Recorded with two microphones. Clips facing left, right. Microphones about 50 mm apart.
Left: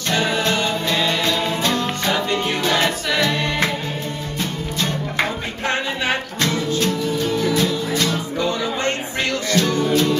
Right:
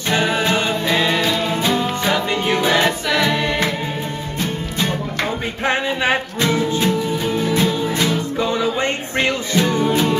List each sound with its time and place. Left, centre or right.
0.1 s music: centre
5.7 s music: centre